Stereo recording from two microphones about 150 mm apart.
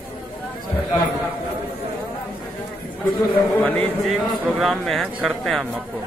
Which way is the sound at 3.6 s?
10° left (ahead or behind).